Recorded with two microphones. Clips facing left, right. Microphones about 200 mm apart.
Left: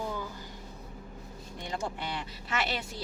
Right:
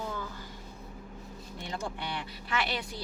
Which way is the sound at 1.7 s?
25° left (ahead or behind).